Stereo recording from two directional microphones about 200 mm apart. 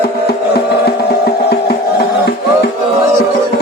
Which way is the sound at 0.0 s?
55° left (ahead or behind).